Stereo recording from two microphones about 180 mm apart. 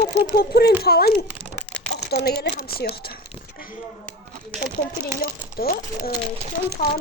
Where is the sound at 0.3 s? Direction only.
60° left (ahead or behind).